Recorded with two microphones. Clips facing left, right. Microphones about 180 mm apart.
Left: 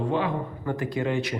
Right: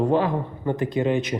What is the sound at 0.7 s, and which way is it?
Speech, 20° right (ahead or behind).